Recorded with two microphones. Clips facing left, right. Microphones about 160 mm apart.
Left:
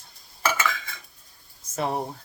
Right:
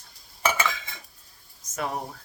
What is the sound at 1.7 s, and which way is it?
Speech, 30° left (ahead or behind).